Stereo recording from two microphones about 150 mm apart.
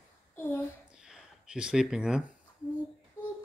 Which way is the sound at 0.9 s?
5° right (ahead or behind).